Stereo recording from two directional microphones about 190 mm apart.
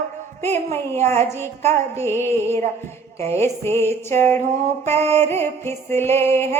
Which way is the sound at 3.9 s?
35° right (ahead or behind).